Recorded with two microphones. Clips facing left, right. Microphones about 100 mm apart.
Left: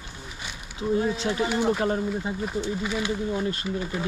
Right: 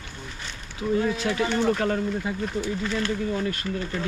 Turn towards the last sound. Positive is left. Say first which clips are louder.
# even
turn(degrees=15)  # may be behind; listen again after turning